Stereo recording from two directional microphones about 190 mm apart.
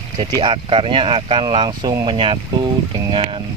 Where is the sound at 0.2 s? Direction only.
25° right (ahead or behind).